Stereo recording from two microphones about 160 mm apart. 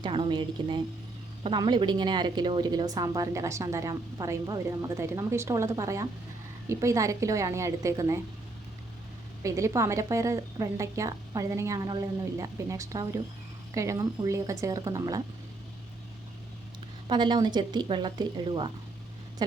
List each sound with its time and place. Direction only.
0.0 s a woman's voice: 30° right (ahead or behind)
9.4 s a woman's voice: 20° right (ahead or behind)
17.1 s a woman's voice: 30° right (ahead or behind)